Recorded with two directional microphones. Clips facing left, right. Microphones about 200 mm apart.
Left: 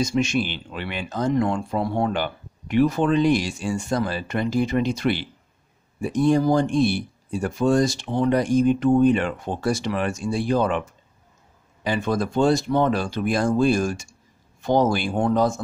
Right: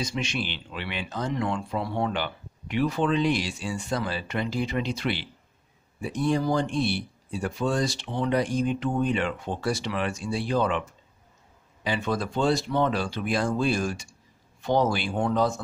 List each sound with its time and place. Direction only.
0.0 s speech: 45° left (ahead or behind)
11.8 s speech: 45° left (ahead or behind)